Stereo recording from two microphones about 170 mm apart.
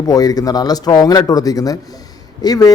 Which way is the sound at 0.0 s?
20° left (ahead or behind).